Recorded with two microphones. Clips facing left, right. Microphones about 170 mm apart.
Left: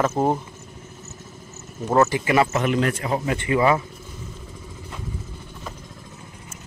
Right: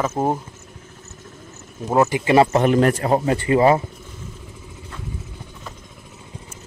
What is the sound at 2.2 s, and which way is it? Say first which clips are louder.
Speech: right 5 dB; 30° right (ahead or behind).